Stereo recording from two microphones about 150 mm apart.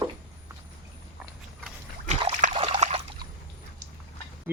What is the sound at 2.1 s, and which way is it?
Trickle, 45° right (ahead or behind).